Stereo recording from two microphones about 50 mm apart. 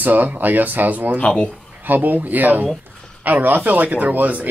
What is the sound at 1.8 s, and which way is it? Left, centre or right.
Speech, right.